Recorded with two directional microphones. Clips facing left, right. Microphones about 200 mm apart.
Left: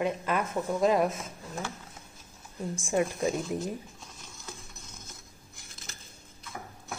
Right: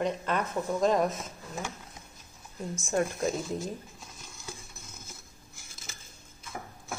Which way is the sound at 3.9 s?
5° right (ahead or behind).